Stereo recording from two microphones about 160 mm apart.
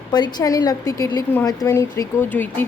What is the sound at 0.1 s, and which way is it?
A woman's voice, 25° left (ahead or behind).